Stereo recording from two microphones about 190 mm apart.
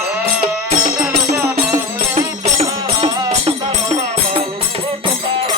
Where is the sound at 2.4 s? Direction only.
30° right (ahead or behind).